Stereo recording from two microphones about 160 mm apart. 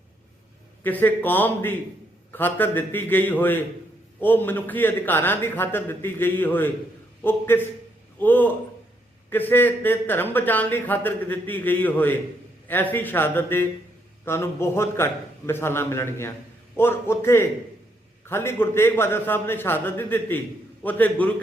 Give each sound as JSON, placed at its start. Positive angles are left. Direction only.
{"t": 0.9, "sound": "speech", "side_deg": 10}